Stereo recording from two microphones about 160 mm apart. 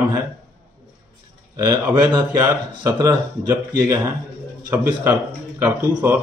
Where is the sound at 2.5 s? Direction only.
20° right (ahead or behind).